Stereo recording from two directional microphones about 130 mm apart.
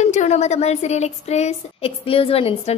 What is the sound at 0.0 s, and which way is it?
Speech, 65° left (ahead or behind).